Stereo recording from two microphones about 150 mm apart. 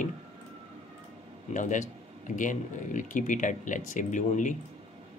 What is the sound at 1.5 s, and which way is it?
Speech, 55° left (ahead or behind).